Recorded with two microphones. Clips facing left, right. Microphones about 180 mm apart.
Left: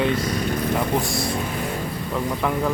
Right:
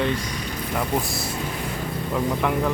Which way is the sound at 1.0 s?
Centre (ahead or behind).